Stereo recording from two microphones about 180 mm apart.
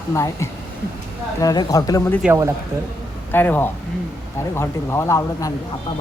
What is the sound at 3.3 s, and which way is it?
Speech, 10° left (ahead or behind).